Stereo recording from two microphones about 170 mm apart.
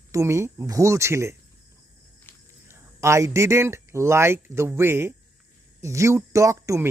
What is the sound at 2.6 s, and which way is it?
Speech, 15° right (ahead or behind).